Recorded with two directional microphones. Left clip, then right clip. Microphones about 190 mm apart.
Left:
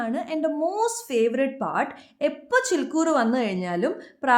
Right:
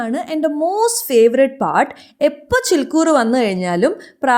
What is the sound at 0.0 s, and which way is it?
A woman's voice, 35° right (ahead or behind).